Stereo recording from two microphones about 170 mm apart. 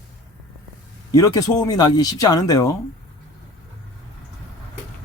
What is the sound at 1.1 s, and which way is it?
Speech, 20° left (ahead or behind).